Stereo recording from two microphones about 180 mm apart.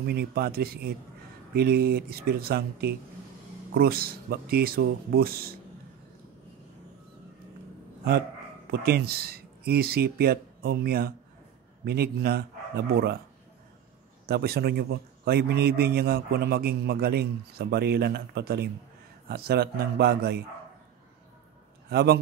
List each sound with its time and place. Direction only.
0.0 s a man's voice: 60° right (ahead or behind)
8.6 s a man's voice: 60° right (ahead or behind)
14.2 s a man's voice: 60° right (ahead or behind)
21.9 s a man's voice: 60° right (ahead or behind)